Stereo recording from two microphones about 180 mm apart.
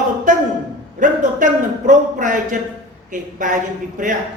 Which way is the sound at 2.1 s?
45° right (ahead or behind).